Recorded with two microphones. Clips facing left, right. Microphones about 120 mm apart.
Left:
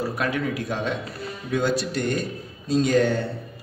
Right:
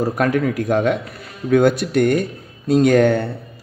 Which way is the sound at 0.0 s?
45° right (ahead or behind).